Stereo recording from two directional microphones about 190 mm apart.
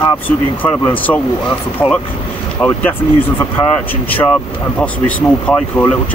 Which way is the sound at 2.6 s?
5° left (ahead or behind).